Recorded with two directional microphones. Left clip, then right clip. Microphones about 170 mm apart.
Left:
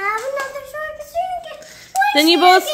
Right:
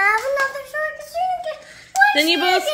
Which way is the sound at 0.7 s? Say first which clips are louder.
Right 3 dB; 5° left (ahead or behind).